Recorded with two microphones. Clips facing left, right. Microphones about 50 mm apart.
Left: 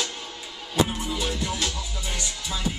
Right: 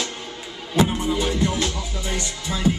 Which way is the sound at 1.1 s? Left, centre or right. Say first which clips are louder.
Right 6 dB; right.